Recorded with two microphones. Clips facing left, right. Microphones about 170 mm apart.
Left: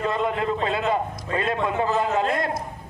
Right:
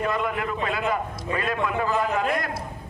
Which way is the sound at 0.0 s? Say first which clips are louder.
Left 2 dB; 25° left (ahead or behind).